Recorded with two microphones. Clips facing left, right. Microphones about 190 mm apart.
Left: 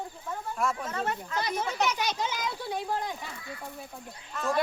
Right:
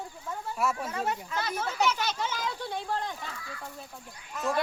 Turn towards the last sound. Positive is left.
turn(degrees=0)  # may be behind; listen again after turning